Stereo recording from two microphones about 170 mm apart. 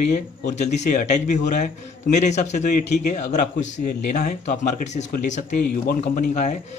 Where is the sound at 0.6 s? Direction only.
45° left (ahead or behind).